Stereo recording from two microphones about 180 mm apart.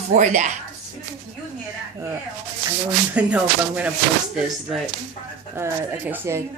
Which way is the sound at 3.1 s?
5° right (ahead or behind).